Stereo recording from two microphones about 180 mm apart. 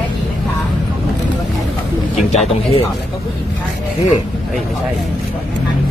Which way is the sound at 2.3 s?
35° left (ahead or behind).